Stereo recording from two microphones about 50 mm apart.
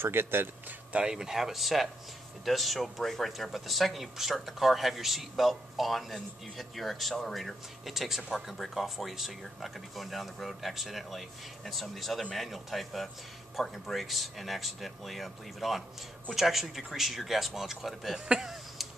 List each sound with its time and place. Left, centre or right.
0.0 s a man's voice: right
0.9 s speech: centre
18.3 s a sound: centre